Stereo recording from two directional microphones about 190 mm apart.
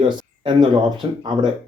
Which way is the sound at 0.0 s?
25° right (ahead or behind).